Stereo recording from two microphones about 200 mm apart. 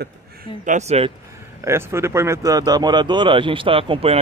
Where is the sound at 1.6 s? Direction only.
15° right (ahead or behind).